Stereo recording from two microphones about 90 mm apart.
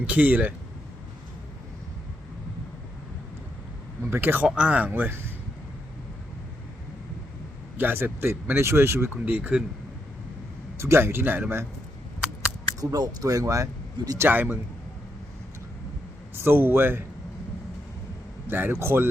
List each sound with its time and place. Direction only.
0.0 s speech: 15° right (ahead or behind)
4.1 s speech: 25° right (ahead or behind)
4.4 s speech: 10° right (ahead or behind)
7.8 s speech: 25° right (ahead or behind)
10.8 s speech: 30° right (ahead or behind)
12.8 s speech: 40° right (ahead or behind)
14.2 s speech: 20° right (ahead or behind)
16.3 s speech: 25° right (ahead or behind)
18.4 s speech: 25° right (ahead or behind)